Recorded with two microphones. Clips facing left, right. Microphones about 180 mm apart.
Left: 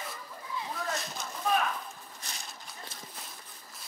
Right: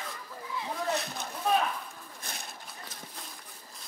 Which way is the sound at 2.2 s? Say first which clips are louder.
Right 3 dB; 55° right (ahead or behind).